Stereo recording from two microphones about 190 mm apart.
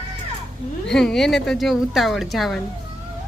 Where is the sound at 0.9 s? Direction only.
5° left (ahead or behind).